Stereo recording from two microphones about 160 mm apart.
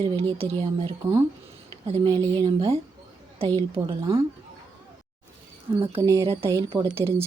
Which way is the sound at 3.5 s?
25° right (ahead or behind).